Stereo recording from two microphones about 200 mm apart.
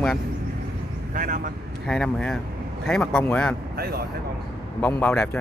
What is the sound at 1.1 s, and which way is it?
Speech, 40° right (ahead or behind).